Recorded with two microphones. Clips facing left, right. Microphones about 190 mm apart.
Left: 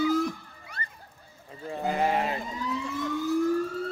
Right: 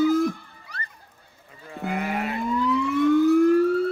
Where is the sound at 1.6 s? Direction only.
30° left (ahead or behind).